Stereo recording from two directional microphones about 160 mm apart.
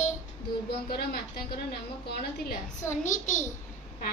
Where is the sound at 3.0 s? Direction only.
50° left (ahead or behind).